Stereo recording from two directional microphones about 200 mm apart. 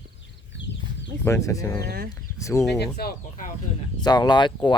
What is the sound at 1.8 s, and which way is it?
Speech, 50° right (ahead or behind).